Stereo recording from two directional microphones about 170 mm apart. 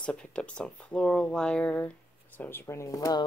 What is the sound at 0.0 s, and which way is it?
Speech, 5° left (ahead or behind).